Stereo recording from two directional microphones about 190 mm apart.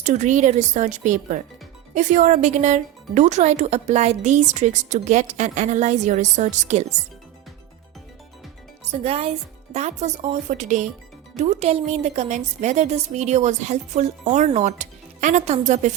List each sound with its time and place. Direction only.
0.0 s speech: 40° right (ahead or behind)
8.9 s speech: 30° right (ahead or behind)